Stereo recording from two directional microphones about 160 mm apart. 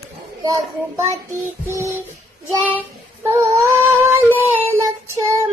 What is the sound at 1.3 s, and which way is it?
Child singing, 15° right (ahead or behind).